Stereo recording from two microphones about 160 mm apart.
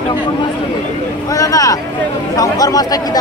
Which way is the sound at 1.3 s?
20° left (ahead or behind).